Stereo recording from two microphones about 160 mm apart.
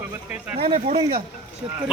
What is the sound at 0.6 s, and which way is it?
Speech, 35° right (ahead or behind).